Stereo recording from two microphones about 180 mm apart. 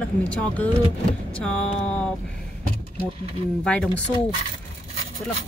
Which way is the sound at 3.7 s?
5° left (ahead or behind).